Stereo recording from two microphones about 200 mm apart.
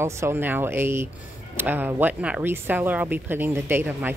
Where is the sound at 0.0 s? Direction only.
10° right (ahead or behind).